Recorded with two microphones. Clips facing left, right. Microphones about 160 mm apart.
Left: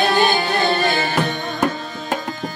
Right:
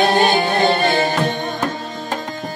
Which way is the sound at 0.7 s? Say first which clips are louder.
Right 2 dB; 35° right (ahead or behind).